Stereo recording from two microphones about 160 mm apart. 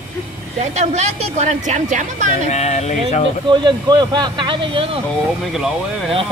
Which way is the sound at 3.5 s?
30° right (ahead or behind).